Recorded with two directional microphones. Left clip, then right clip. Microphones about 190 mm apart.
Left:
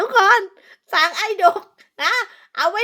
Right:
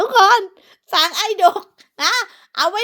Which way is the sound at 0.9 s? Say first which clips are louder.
Right 1 dB; 30° right (ahead or behind).